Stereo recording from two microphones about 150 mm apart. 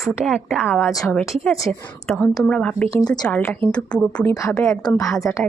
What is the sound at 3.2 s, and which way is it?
A woman's voice, 5° left (ahead or behind).